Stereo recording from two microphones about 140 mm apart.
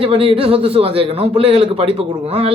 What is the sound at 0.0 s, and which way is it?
A man's voice, 45° right (ahead or behind).